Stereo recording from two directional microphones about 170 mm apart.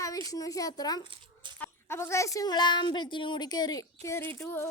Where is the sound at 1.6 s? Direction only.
15° left (ahead or behind).